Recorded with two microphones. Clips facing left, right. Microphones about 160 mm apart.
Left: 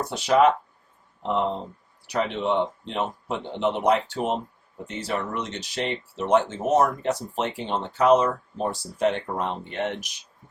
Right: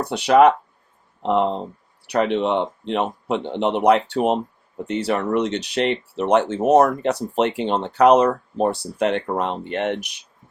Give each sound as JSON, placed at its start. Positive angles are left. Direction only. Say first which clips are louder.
{"t": 0.0, "sound": "speech", "louder": "right 5 dB", "side_deg": -65}
{"t": 2.0, "sound": "speech", "louder": "right 5 dB", "side_deg": -65}